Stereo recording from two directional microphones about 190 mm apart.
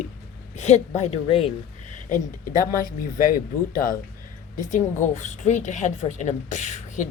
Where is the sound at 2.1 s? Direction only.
45° left (ahead or behind).